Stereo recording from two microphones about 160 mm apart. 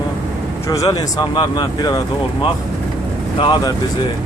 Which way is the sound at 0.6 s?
20° left (ahead or behind).